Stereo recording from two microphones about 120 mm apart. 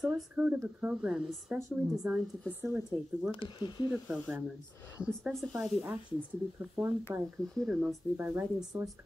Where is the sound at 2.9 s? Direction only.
20° right (ahead or behind).